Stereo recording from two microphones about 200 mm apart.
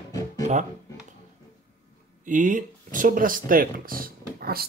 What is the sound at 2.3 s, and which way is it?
Speech, 40° right (ahead or behind).